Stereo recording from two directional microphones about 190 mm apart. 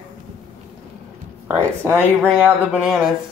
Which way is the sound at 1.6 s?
15° right (ahead or behind).